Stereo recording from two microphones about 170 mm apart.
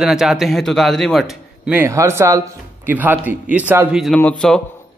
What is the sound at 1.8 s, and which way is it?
Speech, 15° right (ahead or behind).